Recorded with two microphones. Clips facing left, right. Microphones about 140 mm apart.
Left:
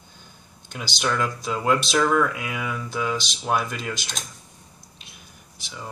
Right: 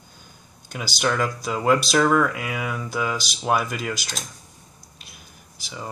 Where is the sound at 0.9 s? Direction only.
5° right (ahead or behind).